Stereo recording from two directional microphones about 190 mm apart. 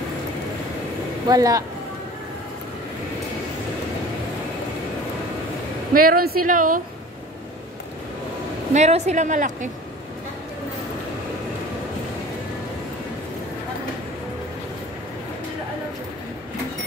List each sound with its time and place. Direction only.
1.3 s speech: 20° right (ahead or behind)
5.9 s a woman's voice: 50° right (ahead or behind)
8.7 s a woman's voice: 35° right (ahead or behind)